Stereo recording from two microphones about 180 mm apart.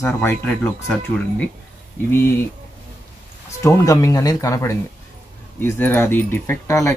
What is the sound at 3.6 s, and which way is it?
Speech, 15° left (ahead or behind).